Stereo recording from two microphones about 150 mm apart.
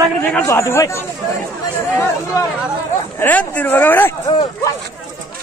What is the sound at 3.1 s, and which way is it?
Speech, 10° left (ahead or behind).